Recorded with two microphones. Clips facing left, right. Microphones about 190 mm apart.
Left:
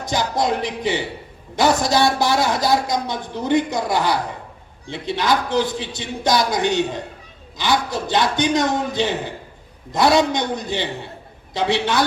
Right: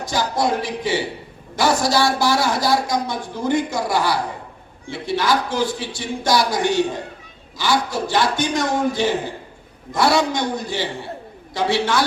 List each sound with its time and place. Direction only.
0.1 s a man's voice: 20° left (ahead or behind)